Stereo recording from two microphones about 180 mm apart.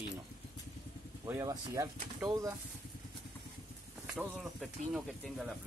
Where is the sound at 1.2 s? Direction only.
15° right (ahead or behind).